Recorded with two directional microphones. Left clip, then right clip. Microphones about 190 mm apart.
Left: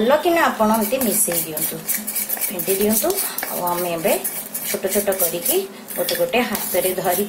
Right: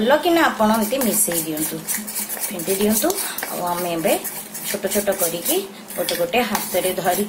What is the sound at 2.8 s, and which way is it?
A woman's voice, centre (ahead or behind).